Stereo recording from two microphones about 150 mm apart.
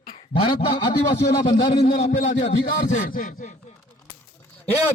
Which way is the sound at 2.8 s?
65° left (ahead or behind).